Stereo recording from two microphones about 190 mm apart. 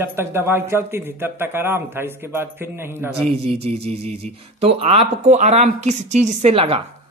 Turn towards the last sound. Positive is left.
turn(degrees=-30)  # may be behind; listen again after turning